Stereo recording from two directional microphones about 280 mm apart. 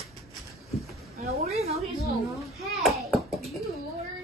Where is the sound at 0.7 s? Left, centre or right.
Centre.